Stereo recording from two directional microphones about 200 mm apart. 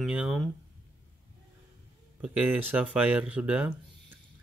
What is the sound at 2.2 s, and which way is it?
Speech, 10° right (ahead or behind).